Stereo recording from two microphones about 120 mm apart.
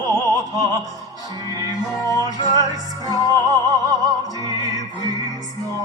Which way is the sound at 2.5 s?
35° right (ahead or behind).